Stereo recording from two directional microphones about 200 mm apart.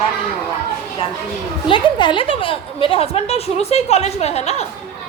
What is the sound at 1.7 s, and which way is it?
A woman's voice, 25° left (ahead or behind).